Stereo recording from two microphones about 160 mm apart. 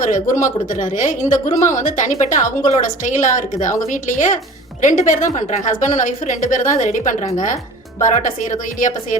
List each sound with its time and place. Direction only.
0.0 s a woman's voice: 50° left (ahead or behind)